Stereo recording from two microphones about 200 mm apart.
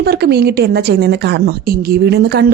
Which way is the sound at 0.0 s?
50° right (ahead or behind).